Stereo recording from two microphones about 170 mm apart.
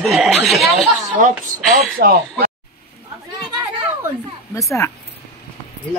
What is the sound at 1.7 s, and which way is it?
Speech, 65° right (ahead or behind).